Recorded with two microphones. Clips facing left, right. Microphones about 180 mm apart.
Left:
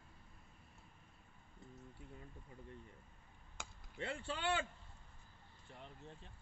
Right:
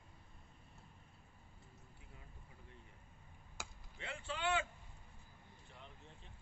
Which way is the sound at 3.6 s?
5° right (ahead or behind).